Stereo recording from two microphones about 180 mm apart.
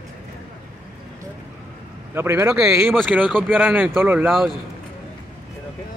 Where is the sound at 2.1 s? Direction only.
15° right (ahead or behind).